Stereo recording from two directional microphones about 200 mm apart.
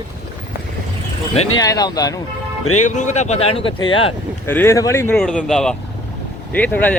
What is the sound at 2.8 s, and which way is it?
Speech, 35° left (ahead or behind).